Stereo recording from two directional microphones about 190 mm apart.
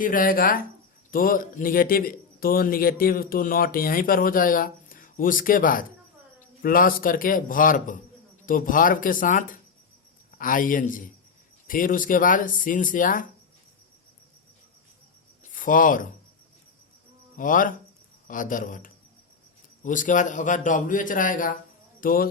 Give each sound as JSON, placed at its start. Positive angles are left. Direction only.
{"t": 0.0, "sound": "a man's voice", "side_deg": 45}
{"t": 15.5, "sound": "speech", "side_deg": 45}
{"t": 17.3, "sound": "a man's voice", "side_deg": 45}